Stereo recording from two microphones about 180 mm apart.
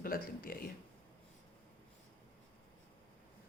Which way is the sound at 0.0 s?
55° left (ahead or behind).